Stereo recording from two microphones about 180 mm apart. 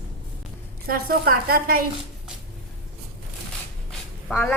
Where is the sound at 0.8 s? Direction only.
55° right (ahead or behind).